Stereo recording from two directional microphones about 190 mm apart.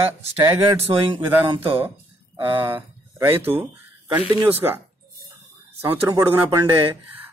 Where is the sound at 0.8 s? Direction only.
30° right (ahead or behind).